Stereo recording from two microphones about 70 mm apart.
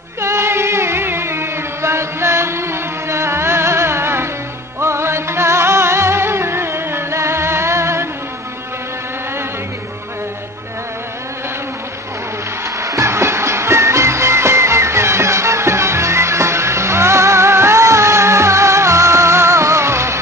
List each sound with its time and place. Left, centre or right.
0.2 s music: right
12.7 s music: right